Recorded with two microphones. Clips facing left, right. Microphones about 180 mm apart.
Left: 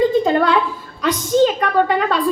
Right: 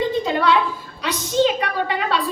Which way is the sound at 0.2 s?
50° left (ahead or behind).